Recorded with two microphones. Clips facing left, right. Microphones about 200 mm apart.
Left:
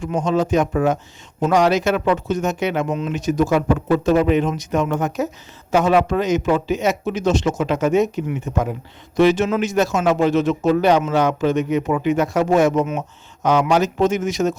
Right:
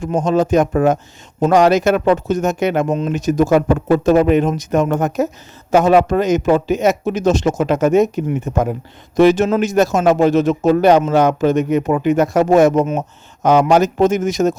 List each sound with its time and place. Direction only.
0.0 s speech: 45° right (ahead or behind)